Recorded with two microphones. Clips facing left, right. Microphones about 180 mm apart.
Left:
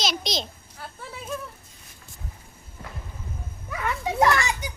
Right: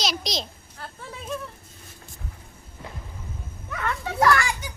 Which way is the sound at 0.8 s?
10° left (ahead or behind).